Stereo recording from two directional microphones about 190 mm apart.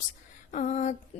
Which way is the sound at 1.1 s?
35° left (ahead or behind).